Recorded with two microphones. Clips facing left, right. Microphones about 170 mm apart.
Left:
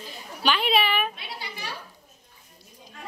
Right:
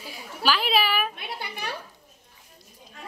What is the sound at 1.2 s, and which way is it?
Speech, 55° right (ahead or behind).